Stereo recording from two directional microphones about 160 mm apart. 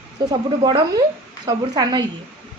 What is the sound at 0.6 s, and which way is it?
A woman's voice, 25° right (ahead or behind).